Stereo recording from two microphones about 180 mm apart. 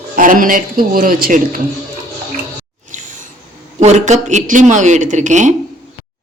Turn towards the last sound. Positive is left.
turn(degrees=-40)  # may be behind; listen again after turning